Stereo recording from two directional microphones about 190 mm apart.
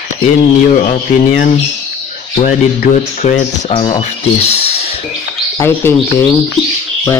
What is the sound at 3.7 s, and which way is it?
Speech, 30° left (ahead or behind).